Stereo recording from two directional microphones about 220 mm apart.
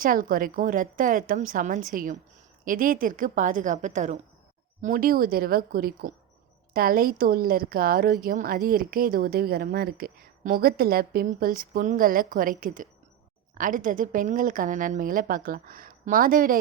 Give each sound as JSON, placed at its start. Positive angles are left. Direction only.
{"t": 0.0, "sound": "speech", "side_deg": -40}